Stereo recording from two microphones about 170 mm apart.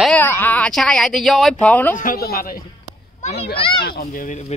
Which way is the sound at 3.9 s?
60° left (ahead or behind).